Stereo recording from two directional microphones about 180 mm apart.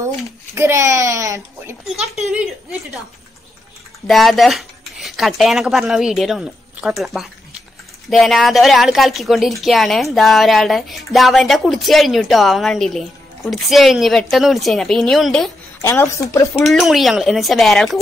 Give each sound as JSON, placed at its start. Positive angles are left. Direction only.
{"t": 0.6, "sound": "speech", "side_deg": -15}
{"t": 4.1, "sound": "speech", "side_deg": 0}
{"t": 15.8, "sound": "speech", "side_deg": 15}
{"t": 16.6, "sound": "speech", "side_deg": 0}